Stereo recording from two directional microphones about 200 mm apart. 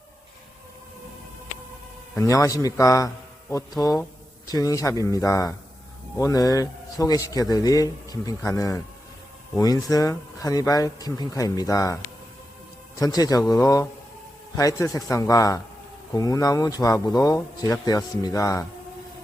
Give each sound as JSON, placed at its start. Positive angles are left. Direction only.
{"t": 2.1, "sound": "a man's voice", "side_deg": 15}
{"t": 13.0, "sound": "a man's voice", "side_deg": 20}